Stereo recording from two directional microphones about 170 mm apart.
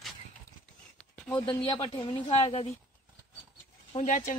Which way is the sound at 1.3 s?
25° left (ahead or behind).